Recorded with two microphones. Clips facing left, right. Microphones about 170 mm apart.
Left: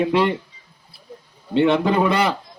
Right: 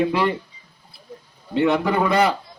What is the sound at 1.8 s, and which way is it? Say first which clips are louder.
Speech: even; 25° left (ahead or behind).